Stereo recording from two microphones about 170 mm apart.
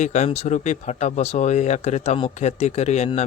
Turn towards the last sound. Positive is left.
turn(degrees=40)  # may be behind; listen again after turning